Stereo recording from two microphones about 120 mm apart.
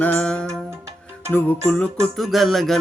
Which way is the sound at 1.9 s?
Centre (ahead or behind).